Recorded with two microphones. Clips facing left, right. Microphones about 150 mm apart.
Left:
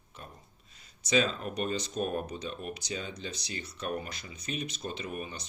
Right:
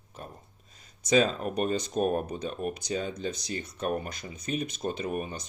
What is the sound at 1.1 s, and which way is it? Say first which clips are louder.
Speech: right 4 dB; 45° right (ahead or behind).